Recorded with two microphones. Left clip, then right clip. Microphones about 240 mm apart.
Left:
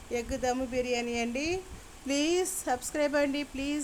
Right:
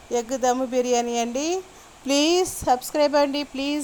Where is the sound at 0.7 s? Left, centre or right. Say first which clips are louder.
Right 9 dB; right.